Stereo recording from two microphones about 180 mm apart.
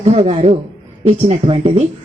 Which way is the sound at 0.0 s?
35° right (ahead or behind).